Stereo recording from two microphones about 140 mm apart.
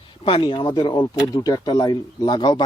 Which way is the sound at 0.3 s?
40° left (ahead or behind).